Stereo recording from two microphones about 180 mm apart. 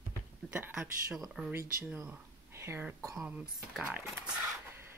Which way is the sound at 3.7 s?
Centre (ahead or behind).